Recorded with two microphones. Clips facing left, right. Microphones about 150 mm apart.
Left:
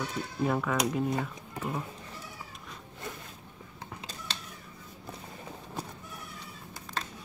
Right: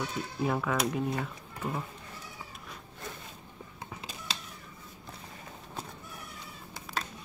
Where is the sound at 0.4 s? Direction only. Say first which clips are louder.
Left 1 dB; centre (ahead or behind).